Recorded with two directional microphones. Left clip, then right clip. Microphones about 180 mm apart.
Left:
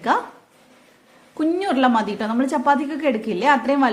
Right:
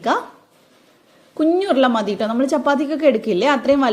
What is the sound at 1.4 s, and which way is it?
A woman's voice, 15° right (ahead or behind).